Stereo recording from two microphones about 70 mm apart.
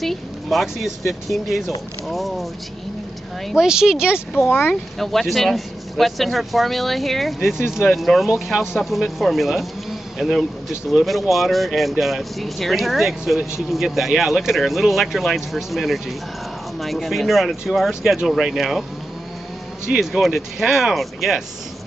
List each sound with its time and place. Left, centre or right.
0.0 s speech: centre
3.4 s speech: centre
4.5 s speech: left
4.9 s speech: centre
19.9 s speech: centre